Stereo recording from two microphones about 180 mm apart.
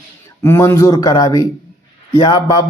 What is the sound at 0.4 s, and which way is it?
Speech, 15° left (ahead or behind).